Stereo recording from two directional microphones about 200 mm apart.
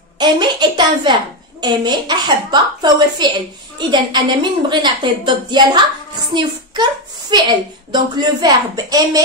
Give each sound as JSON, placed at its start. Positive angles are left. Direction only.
{"t": 0.2, "sound": "a woman's voice", "side_deg": -20}